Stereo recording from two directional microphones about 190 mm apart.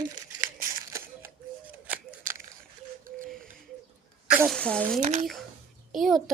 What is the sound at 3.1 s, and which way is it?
Music, 45° right (ahead or behind).